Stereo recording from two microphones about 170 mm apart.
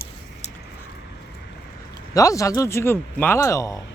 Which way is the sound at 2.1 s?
20° left (ahead or behind).